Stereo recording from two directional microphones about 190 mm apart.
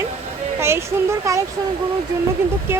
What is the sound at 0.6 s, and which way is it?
Speech, 15° right (ahead or behind).